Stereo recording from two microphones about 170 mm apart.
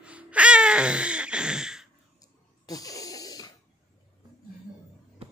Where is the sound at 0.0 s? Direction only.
5° right (ahead or behind).